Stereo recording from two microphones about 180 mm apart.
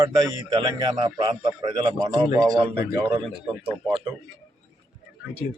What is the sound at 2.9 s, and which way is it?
Speech, 5° right (ahead or behind).